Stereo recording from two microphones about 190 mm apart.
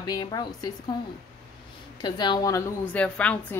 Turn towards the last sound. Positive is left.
turn(degrees=5)  # may be behind; listen again after turning